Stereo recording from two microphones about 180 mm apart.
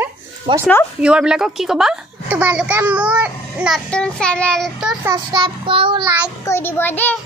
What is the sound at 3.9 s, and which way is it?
A child's voice, 5° left (ahead or behind).